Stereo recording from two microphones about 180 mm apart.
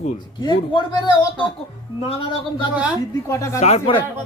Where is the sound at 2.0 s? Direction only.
30° left (ahead or behind).